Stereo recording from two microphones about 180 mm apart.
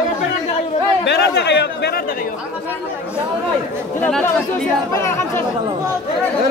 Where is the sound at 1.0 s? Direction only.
70° left (ahead or behind).